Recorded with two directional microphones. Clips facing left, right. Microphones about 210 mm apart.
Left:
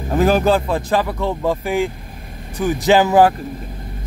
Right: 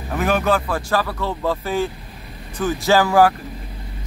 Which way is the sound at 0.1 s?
30° left (ahead or behind).